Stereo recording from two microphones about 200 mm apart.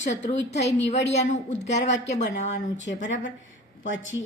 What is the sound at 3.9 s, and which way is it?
Speech, 70° left (ahead or behind).